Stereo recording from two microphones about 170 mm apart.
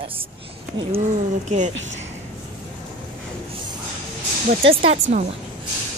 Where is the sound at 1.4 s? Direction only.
45° right (ahead or behind).